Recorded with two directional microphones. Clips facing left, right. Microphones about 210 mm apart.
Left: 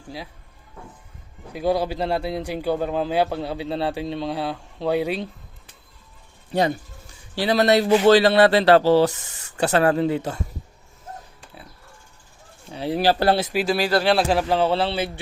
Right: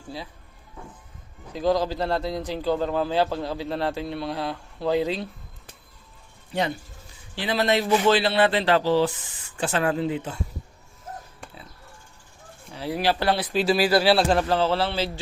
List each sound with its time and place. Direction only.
1.5 s speech: 10° left (ahead or behind)
6.5 s a man's voice: 40° left (ahead or behind)
12.7 s speech: 20° left (ahead or behind)
13.0 s a man's voice: 35° left (ahead or behind)
13.5 s speech: 5° left (ahead or behind)
13.7 s speech: 5° right (ahead or behind)
14.4 s speech: 20° left (ahead or behind)